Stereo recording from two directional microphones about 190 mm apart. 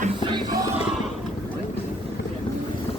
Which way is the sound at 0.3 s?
20° right (ahead or behind).